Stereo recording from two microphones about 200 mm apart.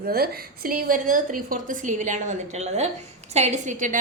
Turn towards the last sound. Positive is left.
turn(degrees=-40)  # may be behind; listen again after turning